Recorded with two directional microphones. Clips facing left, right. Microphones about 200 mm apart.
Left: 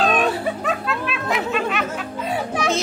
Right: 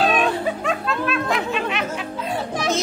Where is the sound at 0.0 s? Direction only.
Centre (ahead or behind).